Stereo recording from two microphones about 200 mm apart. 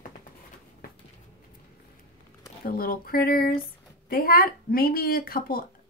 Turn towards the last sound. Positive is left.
turn(degrees=50)  # may be behind; listen again after turning